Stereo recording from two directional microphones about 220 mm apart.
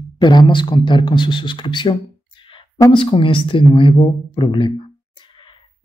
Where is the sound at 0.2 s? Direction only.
20° left (ahead or behind).